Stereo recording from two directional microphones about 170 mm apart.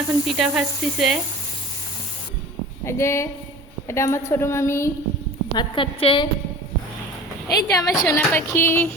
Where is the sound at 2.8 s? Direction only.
15° left (ahead or behind).